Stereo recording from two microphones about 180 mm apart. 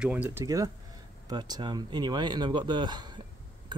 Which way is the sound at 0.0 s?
10° right (ahead or behind).